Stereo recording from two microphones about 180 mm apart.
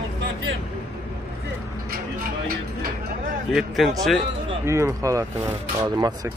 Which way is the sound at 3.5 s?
Centre (ahead or behind).